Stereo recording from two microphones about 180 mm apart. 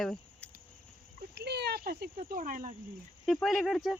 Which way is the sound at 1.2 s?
65° right (ahead or behind).